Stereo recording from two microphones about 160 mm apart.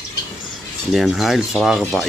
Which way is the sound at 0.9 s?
Centre (ahead or behind).